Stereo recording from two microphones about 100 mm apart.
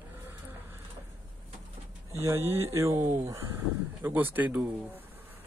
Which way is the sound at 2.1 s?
30° right (ahead or behind).